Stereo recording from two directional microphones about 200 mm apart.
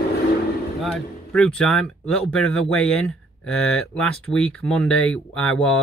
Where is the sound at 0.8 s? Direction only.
5° left (ahead or behind).